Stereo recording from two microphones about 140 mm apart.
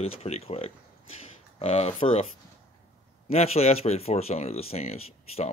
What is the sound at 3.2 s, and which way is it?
Speech, 45° left (ahead or behind).